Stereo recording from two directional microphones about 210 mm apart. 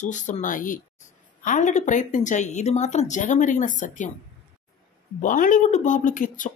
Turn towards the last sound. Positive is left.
turn(degrees=40)  # may be behind; listen again after turning